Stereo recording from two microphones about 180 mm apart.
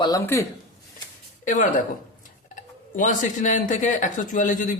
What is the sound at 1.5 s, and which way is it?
Speech, 45° left (ahead or behind).